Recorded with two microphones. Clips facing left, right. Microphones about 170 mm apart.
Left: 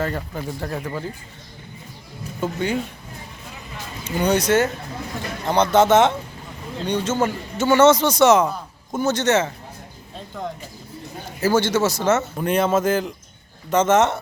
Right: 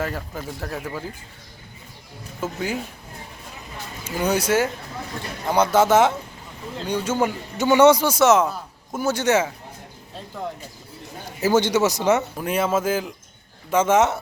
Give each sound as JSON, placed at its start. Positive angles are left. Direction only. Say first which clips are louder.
{"t": 0.0, "sound": "speech", "louder": "left 2 dB", "side_deg": 0}
{"t": 2.4, "sound": "speech", "louder": "left 3 dB", "side_deg": -5}
{"t": 4.0, "sound": "speech", "louder": "left 3 dB", "side_deg": -5}
{"t": 11.3, "sound": "speech", "louder": "even", "side_deg": -15}